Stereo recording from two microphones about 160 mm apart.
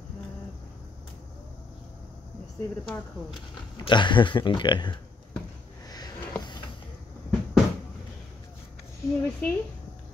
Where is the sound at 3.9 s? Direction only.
30° left (ahead or behind).